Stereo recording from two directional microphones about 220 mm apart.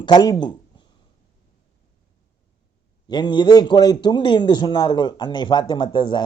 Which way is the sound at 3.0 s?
20° left (ahead or behind).